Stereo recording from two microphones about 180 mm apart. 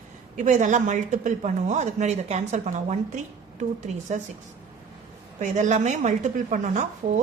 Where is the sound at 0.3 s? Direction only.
45° right (ahead or behind).